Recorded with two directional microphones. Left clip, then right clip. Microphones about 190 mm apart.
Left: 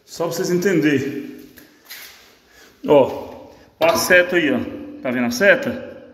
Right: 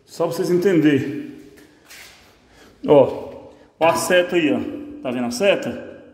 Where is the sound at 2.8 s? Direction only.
15° right (ahead or behind).